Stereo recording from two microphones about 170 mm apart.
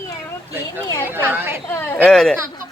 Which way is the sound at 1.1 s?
10° right (ahead or behind).